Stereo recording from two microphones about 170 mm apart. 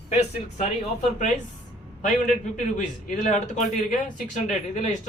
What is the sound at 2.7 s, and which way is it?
Speech, 45° left (ahead or behind).